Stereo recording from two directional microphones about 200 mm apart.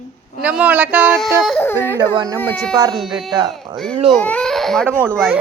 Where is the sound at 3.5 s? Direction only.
Centre (ahead or behind).